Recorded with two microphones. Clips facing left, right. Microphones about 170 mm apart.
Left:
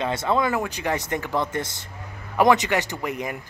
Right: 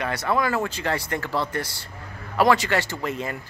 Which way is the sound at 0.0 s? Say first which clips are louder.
Left 1 dB; 25° left (ahead or behind).